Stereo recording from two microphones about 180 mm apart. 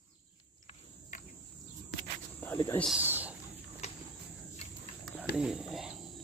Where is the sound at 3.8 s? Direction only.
40° left (ahead or behind).